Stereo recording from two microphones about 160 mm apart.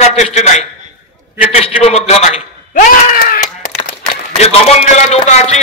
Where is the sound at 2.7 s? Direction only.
60° left (ahead or behind).